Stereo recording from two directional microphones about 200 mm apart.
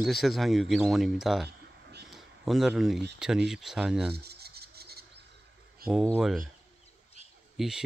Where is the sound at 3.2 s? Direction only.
5° right (ahead or behind).